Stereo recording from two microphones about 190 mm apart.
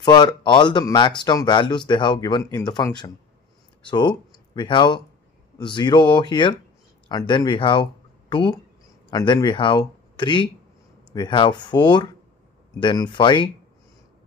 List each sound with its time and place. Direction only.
0.0 s speech: 25° left (ahead or behind)